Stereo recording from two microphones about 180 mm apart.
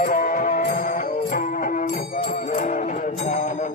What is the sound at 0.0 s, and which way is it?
Music, 50° left (ahead or behind).